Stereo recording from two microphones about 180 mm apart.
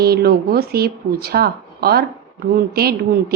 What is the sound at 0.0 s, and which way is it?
A woman's voice, 60° right (ahead or behind).